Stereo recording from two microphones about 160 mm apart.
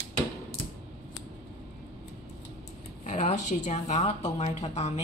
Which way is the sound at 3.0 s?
45° left (ahead or behind).